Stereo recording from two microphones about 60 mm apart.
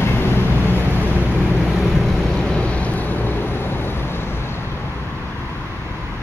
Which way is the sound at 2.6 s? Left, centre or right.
Left.